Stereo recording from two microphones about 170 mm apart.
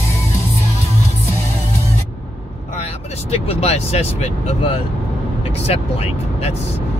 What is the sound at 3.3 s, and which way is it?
Vehicle, 35° left (ahead or behind).